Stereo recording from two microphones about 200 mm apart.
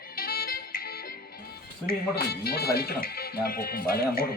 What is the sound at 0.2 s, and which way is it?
Music, 50° left (ahead or behind).